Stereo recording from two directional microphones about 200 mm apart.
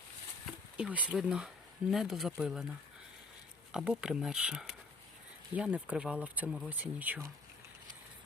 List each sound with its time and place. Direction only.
0.8 s speech: 5° right (ahead or behind)
3.7 s speech: 5° right (ahead or behind)